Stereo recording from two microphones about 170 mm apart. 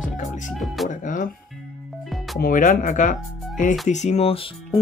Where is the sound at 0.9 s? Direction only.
50° left (ahead or behind).